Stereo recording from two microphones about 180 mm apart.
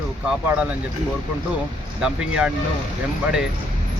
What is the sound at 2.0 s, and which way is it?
Speech, 5° right (ahead or behind).